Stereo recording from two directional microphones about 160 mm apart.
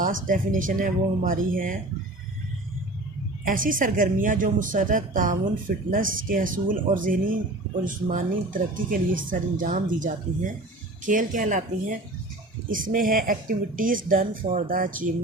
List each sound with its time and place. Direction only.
0.0 s speech: 55° right (ahead or behind)
3.4 s speech: 60° right (ahead or behind)